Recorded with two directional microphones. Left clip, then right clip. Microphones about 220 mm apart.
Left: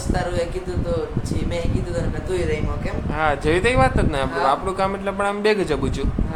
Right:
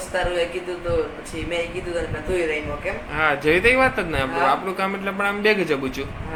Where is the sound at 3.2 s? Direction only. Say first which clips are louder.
Right 1 dB; 15° left (ahead or behind).